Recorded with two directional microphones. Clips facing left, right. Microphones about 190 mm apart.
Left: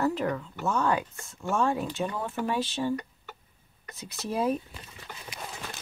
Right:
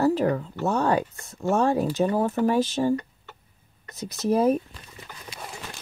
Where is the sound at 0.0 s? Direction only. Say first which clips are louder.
Right 6 dB; 35° right (ahead or behind).